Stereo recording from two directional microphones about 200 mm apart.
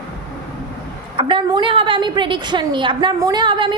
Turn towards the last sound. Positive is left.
turn(degrees=-25)  # may be behind; listen again after turning